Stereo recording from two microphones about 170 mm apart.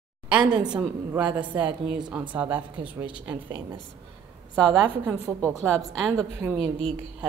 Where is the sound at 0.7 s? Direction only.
5° right (ahead or behind).